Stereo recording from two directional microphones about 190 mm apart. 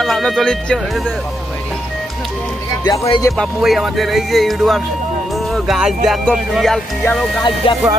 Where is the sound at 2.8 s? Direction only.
20° left (ahead or behind).